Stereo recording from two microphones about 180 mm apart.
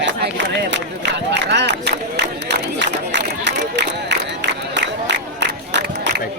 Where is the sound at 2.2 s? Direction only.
70° right (ahead or behind).